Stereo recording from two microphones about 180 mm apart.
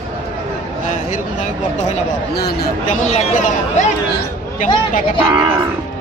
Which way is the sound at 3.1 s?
45° left (ahead or behind).